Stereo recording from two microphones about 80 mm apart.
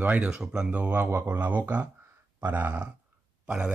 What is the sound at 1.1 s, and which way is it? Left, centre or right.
Speech, right.